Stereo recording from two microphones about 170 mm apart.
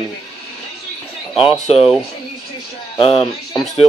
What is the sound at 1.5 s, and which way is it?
Speech, 30° left (ahead or behind).